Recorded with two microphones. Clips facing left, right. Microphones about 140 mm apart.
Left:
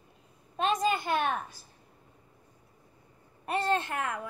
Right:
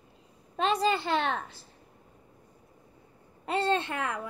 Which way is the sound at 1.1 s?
85° right.